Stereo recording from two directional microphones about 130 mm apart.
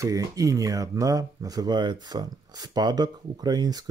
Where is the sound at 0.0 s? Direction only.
25° right (ahead or behind).